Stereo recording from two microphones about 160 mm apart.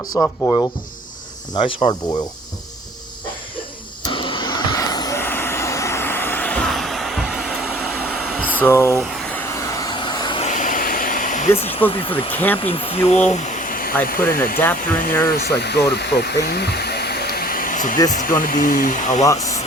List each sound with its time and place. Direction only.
0.2 s speech: 20° left (ahead or behind)
1.5 s speech: 35° left (ahead or behind)
4.0 s vehicle: 30° left (ahead or behind); by 7.9 s 5° right (ahead or behind)
8.0 s air conditioning: centre (ahead or behind)
8.5 s speech: 15° left (ahead or behind)
9.5 s vehicle: 20° left (ahead or behind)
10.4 s hair dryer: 50° left (ahead or behind); by 12.3 s 35° left (ahead or behind)
12.3 s speech: 10° left (ahead or behind)
12.6 s speech: 35° left (ahead or behind); by 14.3 s 60° left (ahead or behind)
15.3 s speech: 80° left; by 19.2 s 55° left (ahead or behind)
19.2 s speech: 20° left (ahead or behind)